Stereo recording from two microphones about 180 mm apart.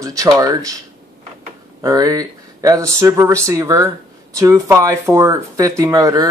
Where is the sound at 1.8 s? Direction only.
20° right (ahead or behind).